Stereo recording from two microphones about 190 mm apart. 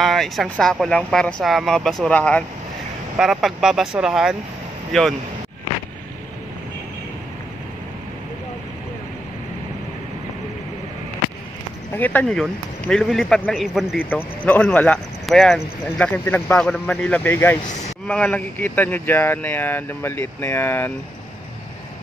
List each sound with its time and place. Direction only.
0.0 s speech: centre (ahead or behind)
12.0 s a man's voice: 10° left (ahead or behind)